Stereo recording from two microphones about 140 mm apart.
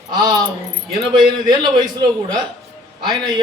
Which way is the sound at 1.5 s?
30° right (ahead or behind).